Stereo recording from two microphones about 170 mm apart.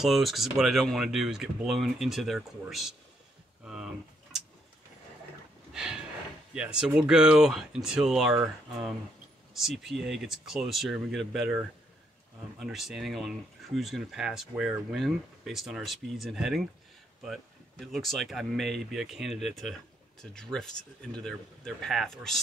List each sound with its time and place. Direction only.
0.0 s speech: centre (ahead or behind)
5.7 s a sound: 5° right (ahead or behind)
6.5 s speech: 5° right (ahead or behind)